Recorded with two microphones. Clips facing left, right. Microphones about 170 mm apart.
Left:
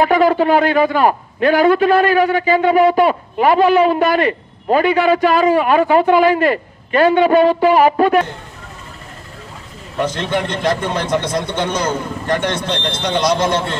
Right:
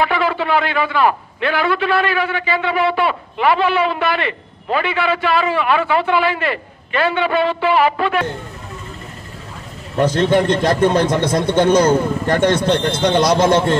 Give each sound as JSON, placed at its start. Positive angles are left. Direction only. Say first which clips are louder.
{"t": 0.0, "sound": "a man's voice", "louder": "left 6 dB", "side_deg": 40}
{"t": 10.1, "sound": "speech", "louder": "right 6 dB", "side_deg": -45}